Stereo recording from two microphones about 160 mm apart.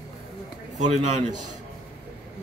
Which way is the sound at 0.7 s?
45° right (ahead or behind).